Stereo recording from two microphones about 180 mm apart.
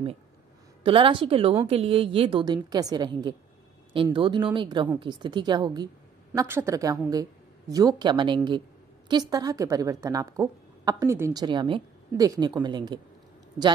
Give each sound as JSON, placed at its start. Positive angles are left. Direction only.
{"t": 0.8, "sound": "a woman's voice", "side_deg": -30}